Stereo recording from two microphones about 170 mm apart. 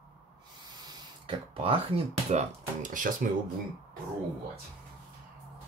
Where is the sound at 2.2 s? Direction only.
45° right (ahead or behind).